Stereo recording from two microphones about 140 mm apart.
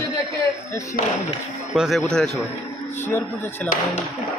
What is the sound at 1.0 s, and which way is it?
Speech, 90° left.